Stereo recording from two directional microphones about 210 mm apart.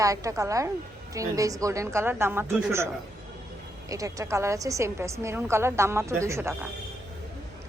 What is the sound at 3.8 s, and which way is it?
A woman's voice, 15° right (ahead or behind).